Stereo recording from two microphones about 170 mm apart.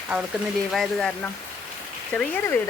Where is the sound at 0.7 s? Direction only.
Centre (ahead or behind).